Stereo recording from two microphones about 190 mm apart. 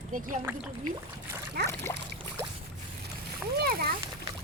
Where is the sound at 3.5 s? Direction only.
55° right (ahead or behind).